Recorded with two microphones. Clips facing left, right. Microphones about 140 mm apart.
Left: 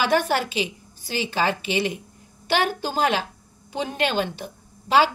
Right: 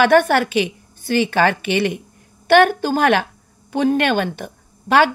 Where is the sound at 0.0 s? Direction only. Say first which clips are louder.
Right 8 dB; 60° right (ahead or behind).